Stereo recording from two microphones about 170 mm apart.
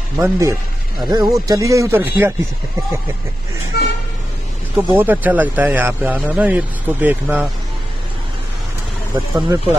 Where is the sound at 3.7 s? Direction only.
70° left (ahead or behind).